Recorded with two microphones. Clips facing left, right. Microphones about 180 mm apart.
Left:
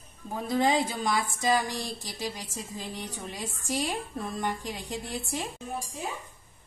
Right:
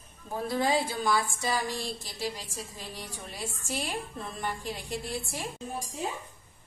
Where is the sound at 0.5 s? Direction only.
20° left (ahead or behind).